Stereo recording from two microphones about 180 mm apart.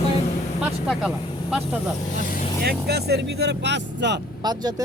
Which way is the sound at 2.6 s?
65° right (ahead or behind).